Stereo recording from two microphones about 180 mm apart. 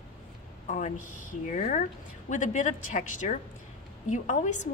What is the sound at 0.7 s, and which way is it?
A woman's voice, 45° left (ahead or behind).